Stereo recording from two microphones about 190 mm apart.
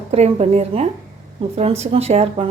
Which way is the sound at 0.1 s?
35° right (ahead or behind).